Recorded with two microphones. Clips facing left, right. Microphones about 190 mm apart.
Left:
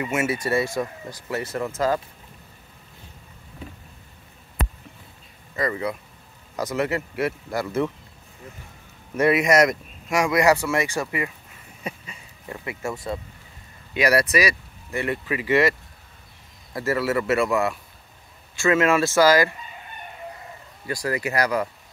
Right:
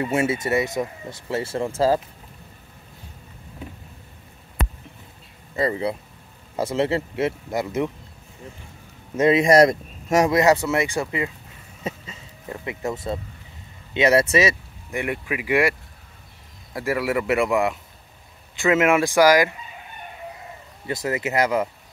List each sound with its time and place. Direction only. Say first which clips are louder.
0.0 s speech: right 2 dB; 35° right (ahead or behind)
5.6 s speech: right 3 dB; 30° right (ahead or behind)
9.1 s speech: right 3 dB; 25° right (ahead or behind); by 10.3 s 40° right (ahead or behind)
10.3 s speech: right 1 dB; 20° right (ahead or behind)
11.8 s a sound: right 3 dB; 25° right (ahead or behind)
13.9 s speech: right 3 dB; 25° right (ahead or behind)
16.7 s speech: even; 15° right (ahead or behind)
20.8 s speech: right 1 dB; 20° right (ahead or behind)